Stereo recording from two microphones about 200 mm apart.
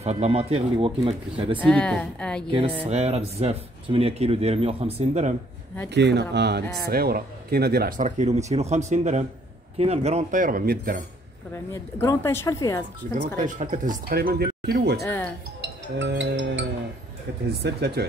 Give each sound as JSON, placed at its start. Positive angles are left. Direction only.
{"t": 0.0, "sound": "speech", "side_deg": -35}
{"t": 1.6, "sound": "a woman's voice", "side_deg": 5}
{"t": 2.9, "sound": "speech", "side_deg": -30}
{"t": 5.9, "sound": "speech", "side_deg": -60}
{"t": 8.2, "sound": "speech", "side_deg": -35}
{"t": 11.7, "sound": "speech", "side_deg": 15}
{"t": 13.0, "sound": "speech", "side_deg": -40}
{"t": 15.0, "sound": "speech", "side_deg": 10}
{"t": 15.6, "sound": "music", "side_deg": -65}
{"t": 17.6, "sound": "speech", "side_deg": -55}